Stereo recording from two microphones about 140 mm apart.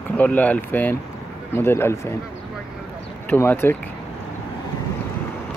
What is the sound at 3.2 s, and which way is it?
Speech, 15° left (ahead or behind).